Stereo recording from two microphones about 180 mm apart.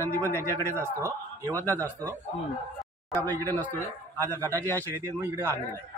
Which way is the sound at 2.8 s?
15° left (ahead or behind).